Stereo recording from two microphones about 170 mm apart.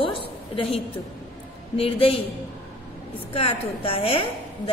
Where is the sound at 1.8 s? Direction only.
35° left (ahead or behind).